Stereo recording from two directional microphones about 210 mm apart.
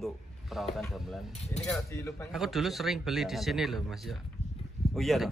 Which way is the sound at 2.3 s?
Centre (ahead or behind).